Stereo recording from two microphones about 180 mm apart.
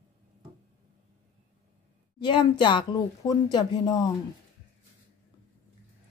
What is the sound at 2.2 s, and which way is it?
A woman's voice, 25° left (ahead or behind).